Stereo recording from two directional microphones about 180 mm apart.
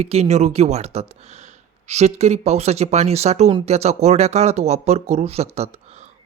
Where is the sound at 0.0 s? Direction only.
35° right (ahead or behind).